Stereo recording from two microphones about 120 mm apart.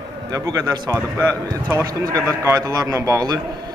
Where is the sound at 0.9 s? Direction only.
20° right (ahead or behind).